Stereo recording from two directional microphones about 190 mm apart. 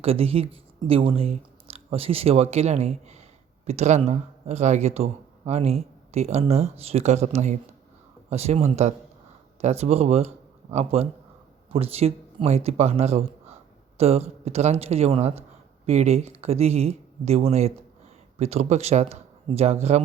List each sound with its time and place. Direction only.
0.0 s speech: 30° right (ahead or behind)